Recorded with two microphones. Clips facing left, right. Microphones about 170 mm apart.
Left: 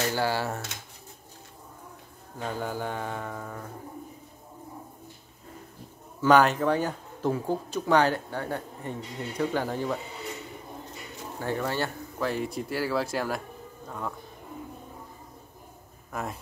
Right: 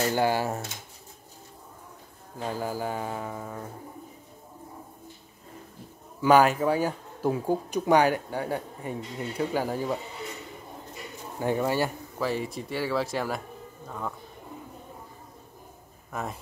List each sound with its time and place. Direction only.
0.1 s speech: 15° right (ahead or behind)
2.3 s speech: 5° right (ahead or behind)
6.2 s speech: 10° right (ahead or behind)
11.3 s speech: 15° right (ahead or behind); by 14.1 s centre (ahead or behind)
16.1 s speech: centre (ahead or behind)